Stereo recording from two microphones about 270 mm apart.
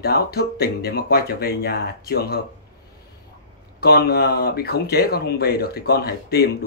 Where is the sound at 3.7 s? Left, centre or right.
Left.